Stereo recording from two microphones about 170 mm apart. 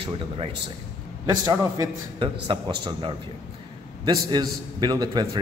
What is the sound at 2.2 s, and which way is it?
A man's voice, 30° right (ahead or behind).